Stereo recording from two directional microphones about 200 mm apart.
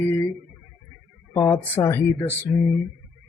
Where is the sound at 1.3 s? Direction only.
15° left (ahead or behind).